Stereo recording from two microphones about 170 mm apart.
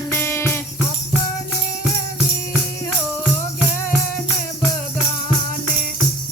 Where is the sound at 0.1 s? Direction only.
15° left (ahead or behind).